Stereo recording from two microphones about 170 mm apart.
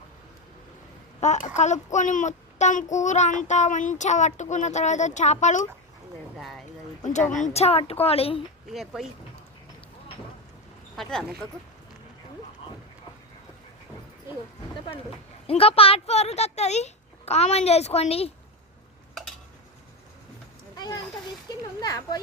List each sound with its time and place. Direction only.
1.2 s a child's voice: 45° left (ahead or behind)
6.3 s a sound: centre (ahead or behind)
7.0 s speech: 45° left (ahead or behind)
8.7 s speech: centre (ahead or behind)
10.9 s speech: centre (ahead or behind)
15.4 s speech: 35° left (ahead or behind)
20.7 s a child's voice: 25° left (ahead or behind)